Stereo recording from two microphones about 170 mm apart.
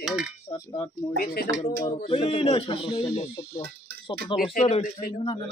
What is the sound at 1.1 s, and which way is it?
Speech, 60° left (ahead or behind).